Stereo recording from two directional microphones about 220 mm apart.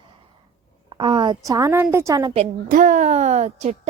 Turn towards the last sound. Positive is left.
turn(degrees=-30)  # may be behind; listen again after turning